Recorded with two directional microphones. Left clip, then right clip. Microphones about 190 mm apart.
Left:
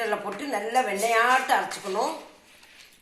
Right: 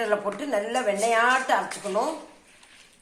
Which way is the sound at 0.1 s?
40° right (ahead or behind).